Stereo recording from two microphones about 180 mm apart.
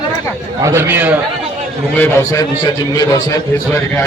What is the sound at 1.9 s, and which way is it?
A man's voice, 15° left (ahead or behind).